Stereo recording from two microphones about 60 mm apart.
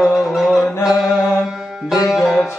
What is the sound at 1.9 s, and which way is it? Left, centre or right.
Music, centre.